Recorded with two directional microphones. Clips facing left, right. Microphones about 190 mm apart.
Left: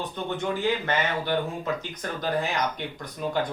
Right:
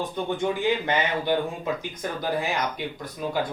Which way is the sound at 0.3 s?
15° right (ahead or behind).